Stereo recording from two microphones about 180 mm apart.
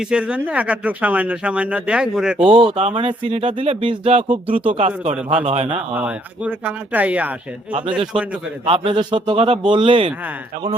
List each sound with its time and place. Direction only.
0.1 s speech: 5° right (ahead or behind)
2.5 s a man's voice: 30° right (ahead or behind)
5.9 s speech: 10° right (ahead or behind)
8.6 s a man's voice: 30° right (ahead or behind)